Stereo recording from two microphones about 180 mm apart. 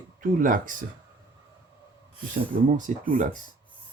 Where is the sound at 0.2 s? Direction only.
50° right (ahead or behind).